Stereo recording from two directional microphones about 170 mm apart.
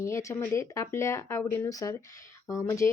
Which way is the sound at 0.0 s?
15° left (ahead or behind).